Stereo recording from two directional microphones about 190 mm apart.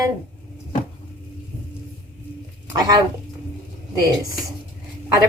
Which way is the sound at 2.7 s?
20° right (ahead or behind).